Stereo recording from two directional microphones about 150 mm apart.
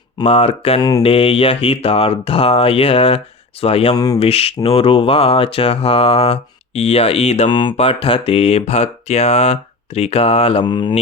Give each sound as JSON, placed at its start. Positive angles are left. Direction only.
{"t": 0.3, "sound": "speech", "side_deg": 45}
{"t": 0.8, "sound": "mantra", "side_deg": 25}
{"t": 1.0, "sound": "speech", "side_deg": 40}
{"t": 3.9, "sound": "mantra", "side_deg": 25}
{"t": 4.2, "sound": "speech", "side_deg": 40}